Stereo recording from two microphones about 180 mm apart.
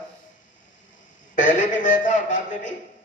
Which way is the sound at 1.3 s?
45° left (ahead or behind).